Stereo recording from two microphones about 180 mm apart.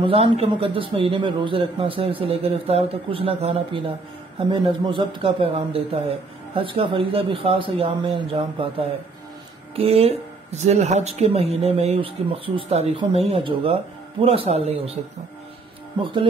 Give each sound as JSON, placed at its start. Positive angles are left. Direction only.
{"t": 0.0, "sound": "a man's voice", "side_deg": -30}
{"t": 16.0, "sound": "speech", "side_deg": -30}